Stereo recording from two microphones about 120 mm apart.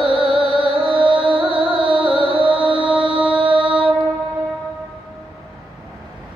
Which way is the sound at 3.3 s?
45° right (ahead or behind).